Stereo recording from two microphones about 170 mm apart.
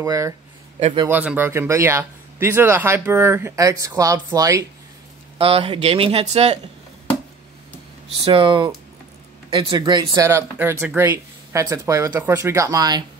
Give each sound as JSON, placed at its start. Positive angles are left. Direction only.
{"t": 0.0, "sound": "speech", "side_deg": -20}
{"t": 5.4, "sound": "speech", "side_deg": -35}
{"t": 8.2, "sound": "speech", "side_deg": -30}